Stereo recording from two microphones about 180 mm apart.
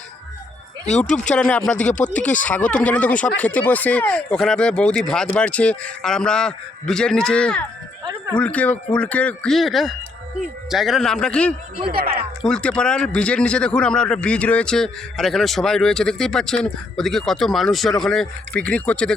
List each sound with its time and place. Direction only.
0.9 s speech: 40° left (ahead or behind)
1.1 s speech: 5° left (ahead or behind)
11.9 s speech: 55° right (ahead or behind)
12.4 s speech: 5° left (ahead or behind)